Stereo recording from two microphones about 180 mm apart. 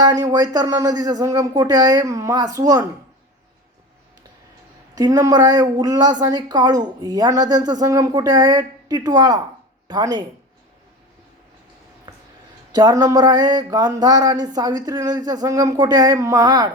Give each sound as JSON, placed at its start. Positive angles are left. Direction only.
{"t": 0.0, "sound": "a woman's voice", "side_deg": -20}
{"t": 4.9, "sound": "a woman's voice", "side_deg": -20}
{"t": 12.7, "sound": "a woman's voice", "side_deg": -20}